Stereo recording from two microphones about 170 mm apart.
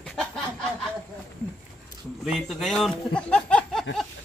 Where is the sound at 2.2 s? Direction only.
Centre (ahead or behind).